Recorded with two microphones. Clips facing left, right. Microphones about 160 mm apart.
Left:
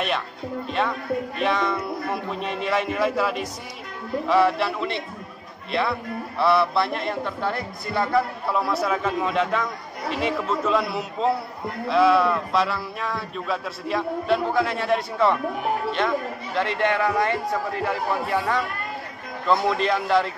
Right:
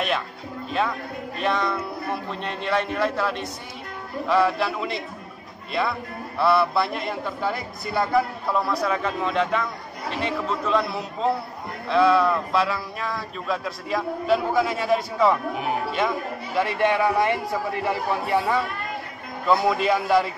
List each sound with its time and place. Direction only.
0.7 s speech: centre (ahead or behind)
16.5 s a man's voice: 10° right (ahead or behind)